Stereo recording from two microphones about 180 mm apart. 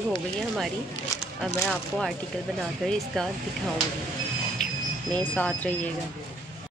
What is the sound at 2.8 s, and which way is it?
Speech, 5° left (ahead or behind).